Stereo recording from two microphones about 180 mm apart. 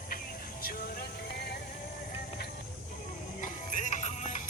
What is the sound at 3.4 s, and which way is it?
Music, 45° left (ahead or behind).